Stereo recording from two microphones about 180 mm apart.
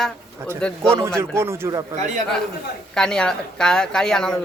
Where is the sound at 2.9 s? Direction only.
5° left (ahead or behind).